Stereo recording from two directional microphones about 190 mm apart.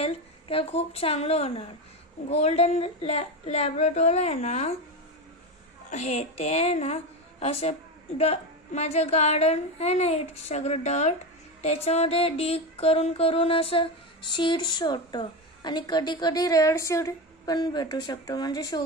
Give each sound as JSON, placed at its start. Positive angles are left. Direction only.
{"t": 0.0, "sound": "a woman's voice", "side_deg": 30}
{"t": 5.9, "sound": "a woman's voice", "side_deg": 35}
{"t": 11.6, "sound": "music", "side_deg": 35}